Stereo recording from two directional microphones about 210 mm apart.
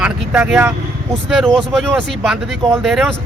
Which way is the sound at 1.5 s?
Centre (ahead or behind).